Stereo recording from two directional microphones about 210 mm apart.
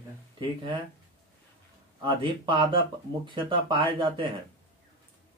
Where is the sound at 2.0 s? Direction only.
25° right (ahead or behind).